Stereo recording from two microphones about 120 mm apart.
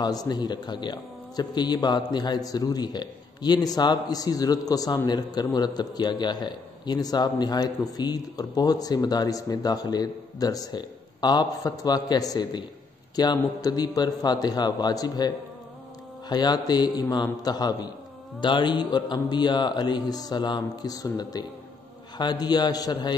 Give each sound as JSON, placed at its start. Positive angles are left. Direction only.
{"t": 0.0, "sound": "a man's voice", "side_deg": 35}